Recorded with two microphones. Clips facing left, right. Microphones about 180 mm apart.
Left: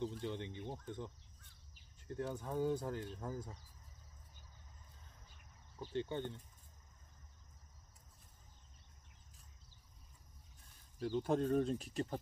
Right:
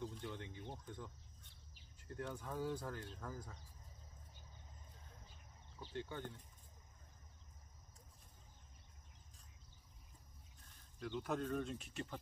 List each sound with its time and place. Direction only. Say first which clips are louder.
0.0 s speech: left 6 dB; 25° left (ahead or behind)
2.3 s speech: left 6 dB; 20° left (ahead or behind)
5.9 s speech: left 6 dB; 25° left (ahead or behind)
11.0 s speech: left 6 dB; 30° left (ahead or behind)